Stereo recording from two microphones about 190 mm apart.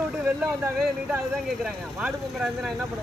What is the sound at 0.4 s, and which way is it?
Speech, 5° right (ahead or behind).